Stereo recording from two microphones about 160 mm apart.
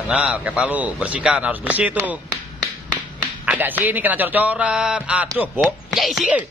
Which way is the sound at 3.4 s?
10° right (ahead or behind).